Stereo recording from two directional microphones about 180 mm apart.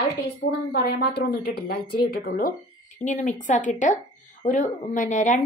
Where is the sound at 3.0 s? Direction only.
45° left (ahead or behind).